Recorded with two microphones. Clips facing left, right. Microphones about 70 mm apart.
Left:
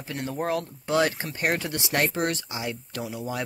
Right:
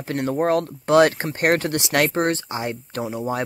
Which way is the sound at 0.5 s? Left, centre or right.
Right.